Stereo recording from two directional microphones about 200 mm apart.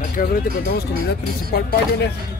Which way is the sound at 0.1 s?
45° left (ahead or behind).